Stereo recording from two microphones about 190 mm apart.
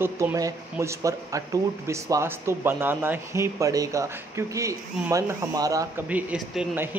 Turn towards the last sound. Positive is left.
turn(degrees=-5)  # may be behind; listen again after turning